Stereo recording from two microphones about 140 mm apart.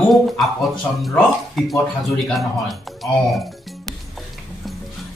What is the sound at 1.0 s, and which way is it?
Speech, centre (ahead or behind).